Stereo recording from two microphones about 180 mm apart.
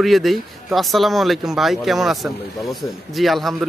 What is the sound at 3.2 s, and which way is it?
Speech, centre (ahead or behind).